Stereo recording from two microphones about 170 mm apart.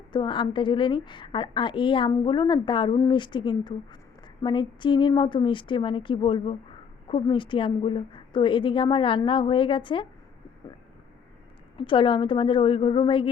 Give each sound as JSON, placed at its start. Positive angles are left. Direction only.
{"t": 0.1, "sound": "a woman's voice", "side_deg": 30}
{"t": 11.8, "sound": "a woman's voice", "side_deg": 30}